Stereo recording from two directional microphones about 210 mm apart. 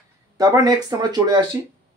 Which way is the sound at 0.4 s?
15° right (ahead or behind).